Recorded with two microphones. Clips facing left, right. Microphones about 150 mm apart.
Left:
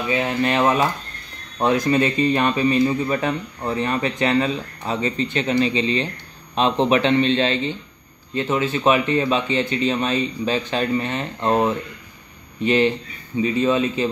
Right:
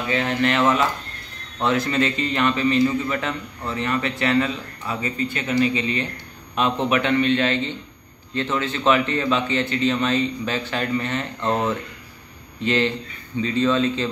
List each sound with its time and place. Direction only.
0.1 s speech: 20° left (ahead or behind)
2.4 s a man's voice: 30° left (ahead or behind); by 14.0 s 15° left (ahead or behind)